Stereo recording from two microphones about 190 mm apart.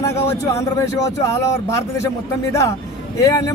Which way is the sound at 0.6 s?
15° left (ahead or behind).